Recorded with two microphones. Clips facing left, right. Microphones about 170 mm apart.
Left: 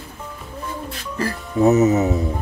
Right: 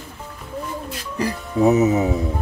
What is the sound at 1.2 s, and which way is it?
Speech, 15° right (ahead or behind).